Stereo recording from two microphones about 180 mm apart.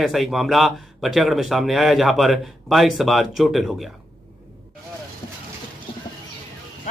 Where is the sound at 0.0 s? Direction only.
Centre (ahead or behind).